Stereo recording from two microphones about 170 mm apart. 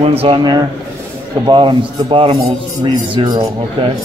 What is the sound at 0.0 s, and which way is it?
Speech, 35° right (ahead or behind).